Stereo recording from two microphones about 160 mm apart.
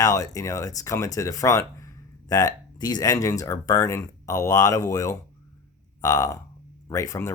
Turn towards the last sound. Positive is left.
turn(degrees=20)  # may be behind; listen again after turning